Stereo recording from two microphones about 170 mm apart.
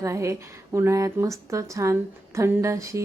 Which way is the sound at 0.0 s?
15° right (ahead or behind).